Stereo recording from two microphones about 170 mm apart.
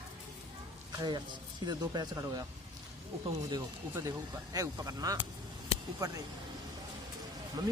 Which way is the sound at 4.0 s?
20° right (ahead or behind).